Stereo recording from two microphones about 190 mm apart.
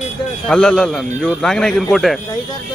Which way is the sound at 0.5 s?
5° left (ahead or behind).